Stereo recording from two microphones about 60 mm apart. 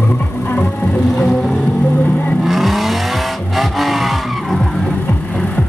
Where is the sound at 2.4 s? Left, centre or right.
Centre.